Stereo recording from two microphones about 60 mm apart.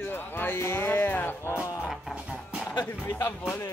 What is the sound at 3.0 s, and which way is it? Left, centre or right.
Speech, left.